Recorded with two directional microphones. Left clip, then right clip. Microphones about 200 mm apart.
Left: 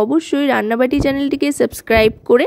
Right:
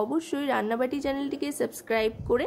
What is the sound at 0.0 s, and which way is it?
Speech, 35° left (ahead or behind).